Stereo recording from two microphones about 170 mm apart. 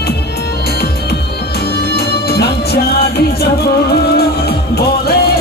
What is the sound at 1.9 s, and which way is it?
Music, 70° left (ahead or behind).